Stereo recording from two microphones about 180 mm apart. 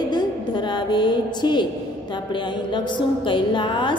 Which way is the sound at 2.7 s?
25° left (ahead or behind).